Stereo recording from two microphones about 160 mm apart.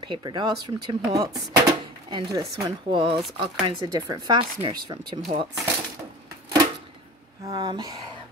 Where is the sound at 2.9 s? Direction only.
30° right (ahead or behind).